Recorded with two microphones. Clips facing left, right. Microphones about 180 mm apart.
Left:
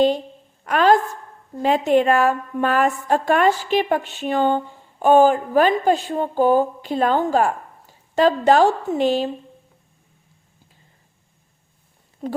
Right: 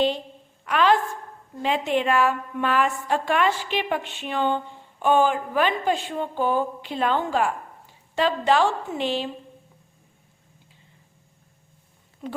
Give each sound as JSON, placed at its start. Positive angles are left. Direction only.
{"t": 0.6, "sound": "a sound", "side_deg": 45}
{"t": 1.6, "sound": "a woman's voice", "side_deg": 45}
{"t": 12.2, "sound": "a woman's voice", "side_deg": 35}